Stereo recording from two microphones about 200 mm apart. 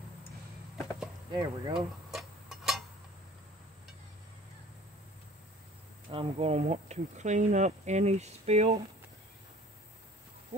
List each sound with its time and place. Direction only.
1.3 s speech: 20° right (ahead or behind)
2.0 s tick-tock: centre (ahead or behind)
6.0 s speech: 30° right (ahead or behind)